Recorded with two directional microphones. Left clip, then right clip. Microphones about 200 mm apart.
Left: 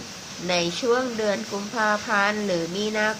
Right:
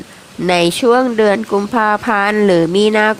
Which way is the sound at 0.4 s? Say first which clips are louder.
Right 11 dB; 50° right (ahead or behind).